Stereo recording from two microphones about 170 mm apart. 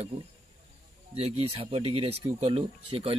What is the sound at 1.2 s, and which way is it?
A man's voice, 35° right (ahead or behind).